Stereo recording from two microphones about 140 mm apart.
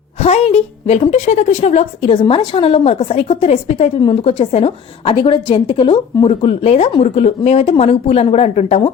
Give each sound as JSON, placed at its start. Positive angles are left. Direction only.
{"t": 0.2, "sound": "a woman's voice", "side_deg": 50}